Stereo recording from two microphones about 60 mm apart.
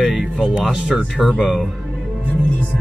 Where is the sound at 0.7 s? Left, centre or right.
Centre.